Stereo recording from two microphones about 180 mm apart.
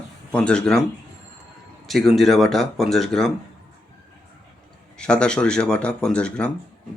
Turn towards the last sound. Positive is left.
turn(degrees=5)  # may be behind; listen again after turning